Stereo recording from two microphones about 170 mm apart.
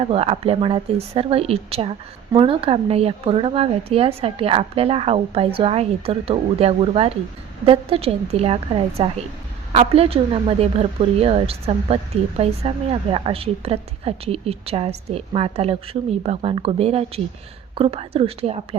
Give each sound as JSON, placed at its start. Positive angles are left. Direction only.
{"t": 0.0, "sound": "speech", "side_deg": -35}